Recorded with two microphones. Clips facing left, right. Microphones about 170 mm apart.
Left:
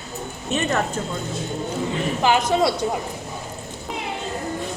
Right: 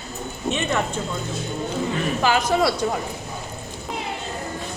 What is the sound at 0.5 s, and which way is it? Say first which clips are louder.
Speech: left 3 dB; 40° left (ahead or behind).